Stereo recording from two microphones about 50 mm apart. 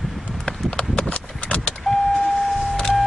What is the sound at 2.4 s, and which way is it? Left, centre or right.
Power windows, centre.